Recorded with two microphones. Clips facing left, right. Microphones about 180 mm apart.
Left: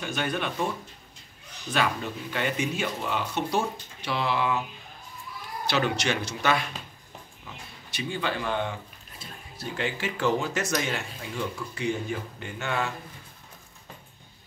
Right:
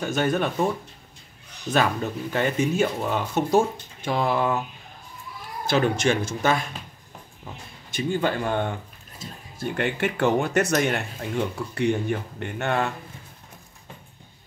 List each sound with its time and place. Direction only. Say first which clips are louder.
0.0 s speech: right 6 dB; 45° right (ahead or behind)
2.3 s speech: right 6 dB; 45° right (ahead or behind)
5.7 s speech: right 5 dB; 50° right (ahead or behind)
7.9 s speech: right 6 dB; 45° right (ahead or behind)